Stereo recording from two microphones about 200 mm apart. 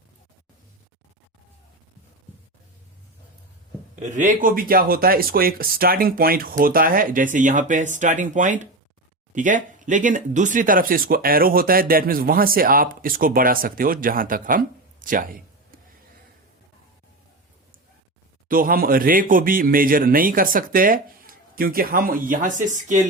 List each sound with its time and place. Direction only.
4.0 s speech: 35° right (ahead or behind)
18.4 s speech: 45° right (ahead or behind)